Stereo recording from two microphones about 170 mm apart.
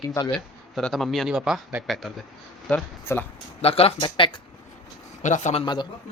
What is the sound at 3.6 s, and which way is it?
Speech, 35° left (ahead or behind).